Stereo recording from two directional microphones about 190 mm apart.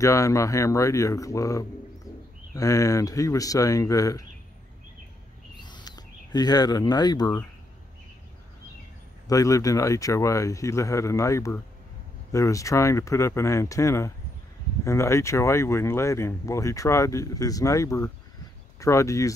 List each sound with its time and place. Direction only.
0.0 s speech: 15° left (ahead or behind)
2.1 s bird: 20° left (ahead or behind)
2.5 s speech: 15° left (ahead or behind)
5.6 s a sound: 25° left (ahead or behind)
9.3 s speech: 15° left (ahead or behind)